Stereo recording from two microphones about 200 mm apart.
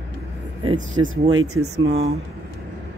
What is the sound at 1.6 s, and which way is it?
Speech, 55° right (ahead or behind).